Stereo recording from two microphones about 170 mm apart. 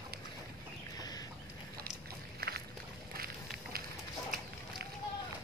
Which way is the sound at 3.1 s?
60° right (ahead or behind).